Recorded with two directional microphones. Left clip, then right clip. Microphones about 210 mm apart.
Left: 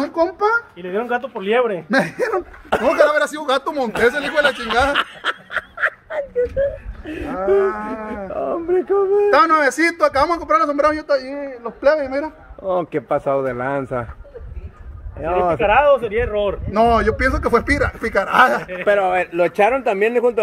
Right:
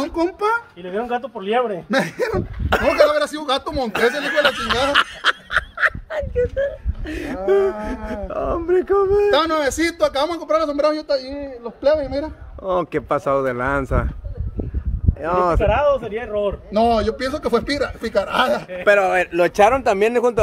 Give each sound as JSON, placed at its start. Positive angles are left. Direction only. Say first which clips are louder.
{"t": 0.0, "sound": "a child's voice", "louder": "left 3 dB", "side_deg": -35}
{"t": 0.8, "sound": "speech", "louder": "left 2 dB", "side_deg": 20}
{"t": 1.9, "sound": "moo", "louder": "left 2 dB", "side_deg": -10}
{"t": 3.4, "sound": "speech", "louder": "left 2 dB", "side_deg": -5}
{"t": 7.4, "sound": "moo", "louder": "left 1 dB", "side_deg": -15}
{"t": 10.8, "sound": "speech", "louder": "left 2 dB", "side_deg": -25}
{"t": 12.0, "sound": "moo", "louder": "left 2 dB", "side_deg": -20}
{"t": 15.1, "sound": "moo", "louder": "even", "side_deg": -15}
{"t": 15.6, "sound": "speech", "louder": "left 4 dB", "side_deg": 30}
{"t": 16.7, "sound": "speech", "louder": "left 2 dB", "side_deg": -20}
{"t": 17.4, "sound": "moo", "louder": "left 3 dB", "side_deg": -10}
{"t": 18.9, "sound": "speech", "louder": "right 1 dB", "side_deg": -20}